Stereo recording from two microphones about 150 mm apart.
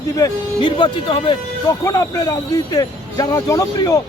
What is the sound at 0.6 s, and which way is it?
Speech, 35° left (ahead or behind).